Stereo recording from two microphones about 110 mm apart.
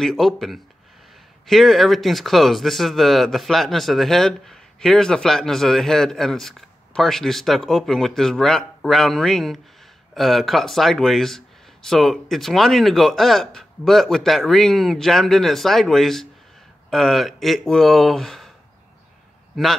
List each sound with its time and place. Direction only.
0.0 s speech: centre (ahead or behind)
19.5 s a man's voice: centre (ahead or behind)